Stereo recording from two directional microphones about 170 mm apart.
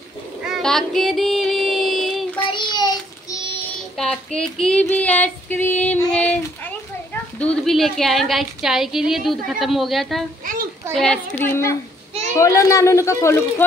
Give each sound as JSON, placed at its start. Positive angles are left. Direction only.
{"t": 0.5, "sound": "child singing", "side_deg": 0}
{"t": 2.5, "sound": "child singing", "side_deg": 25}
{"t": 3.9, "sound": "female singing", "side_deg": 5}
{"t": 7.3, "sound": "a woman's voice", "side_deg": 5}
{"t": 10.4, "sound": "children playing", "side_deg": -55}
{"t": 11.0, "sound": "female singing", "side_deg": 10}